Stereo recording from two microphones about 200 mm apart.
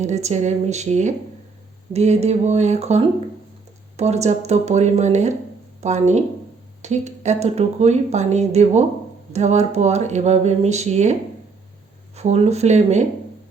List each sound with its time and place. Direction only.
0.0 s speech: 35° right (ahead or behind)